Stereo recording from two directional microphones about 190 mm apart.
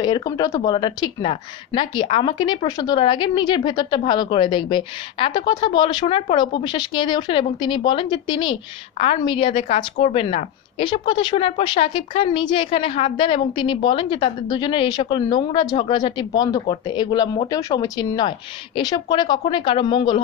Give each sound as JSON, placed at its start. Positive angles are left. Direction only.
{"t": 0.0, "sound": "a woman's voice", "side_deg": 20}